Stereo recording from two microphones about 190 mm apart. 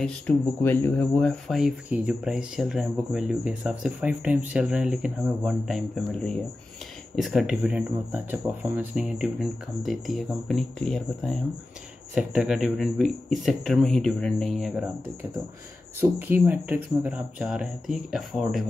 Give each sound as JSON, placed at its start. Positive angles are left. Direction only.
{"t": 0.0, "sound": "speech", "side_deg": 10}
{"t": 16.0, "sound": "speech", "side_deg": -10}